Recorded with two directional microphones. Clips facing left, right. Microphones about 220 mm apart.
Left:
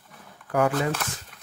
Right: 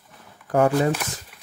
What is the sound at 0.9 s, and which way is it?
Chopping, 10° right (ahead or behind).